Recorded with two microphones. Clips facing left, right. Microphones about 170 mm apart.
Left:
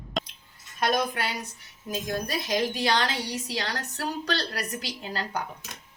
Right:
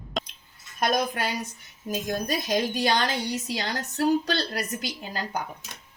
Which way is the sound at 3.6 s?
25° right (ahead or behind).